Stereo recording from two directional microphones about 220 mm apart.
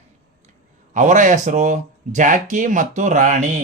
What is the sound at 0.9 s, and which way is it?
Speech, 35° right (ahead or behind).